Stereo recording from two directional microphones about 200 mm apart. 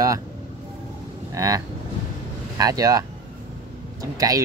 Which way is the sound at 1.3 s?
15° right (ahead or behind).